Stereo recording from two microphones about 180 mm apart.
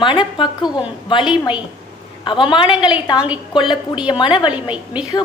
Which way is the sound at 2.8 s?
25° left (ahead or behind).